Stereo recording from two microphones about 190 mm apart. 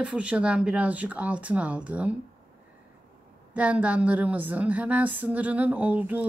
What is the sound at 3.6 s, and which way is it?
A woman's voice, 5° right (ahead or behind).